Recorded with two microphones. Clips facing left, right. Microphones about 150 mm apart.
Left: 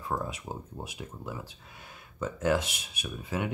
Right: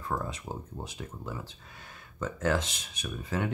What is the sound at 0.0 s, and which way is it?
Speech, 10° left (ahead or behind).